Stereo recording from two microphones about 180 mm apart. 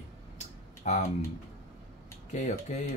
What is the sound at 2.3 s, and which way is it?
Speech, 40° left (ahead or behind).